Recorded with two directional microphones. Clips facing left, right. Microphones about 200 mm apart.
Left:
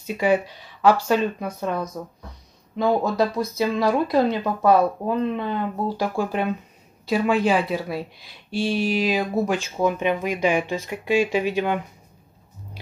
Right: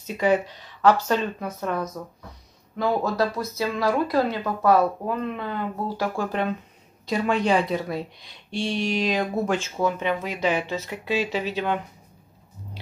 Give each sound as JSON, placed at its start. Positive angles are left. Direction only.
{"t": 0.0, "sound": "speech", "side_deg": 10}